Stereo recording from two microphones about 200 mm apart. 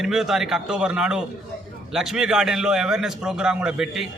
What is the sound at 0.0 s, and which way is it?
A man's voice, centre (ahead or behind).